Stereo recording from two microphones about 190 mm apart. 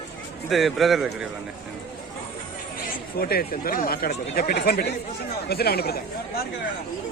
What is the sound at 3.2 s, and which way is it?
Speech, 55° left (ahead or behind).